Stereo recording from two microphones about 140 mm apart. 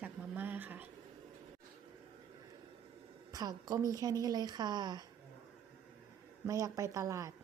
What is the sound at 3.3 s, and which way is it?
A woman's voice, 25° right (ahead or behind).